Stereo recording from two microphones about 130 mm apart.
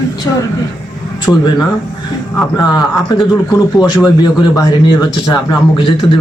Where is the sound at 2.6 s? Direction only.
35° left (ahead or behind).